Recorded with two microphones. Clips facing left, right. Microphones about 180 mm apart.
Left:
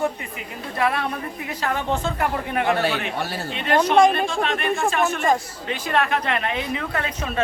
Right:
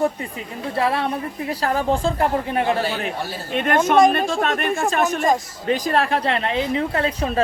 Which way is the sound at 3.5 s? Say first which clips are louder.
Right 1 dB; 50° right (ahead or behind).